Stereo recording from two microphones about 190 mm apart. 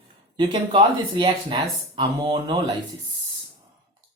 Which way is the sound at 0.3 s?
25° right (ahead or behind).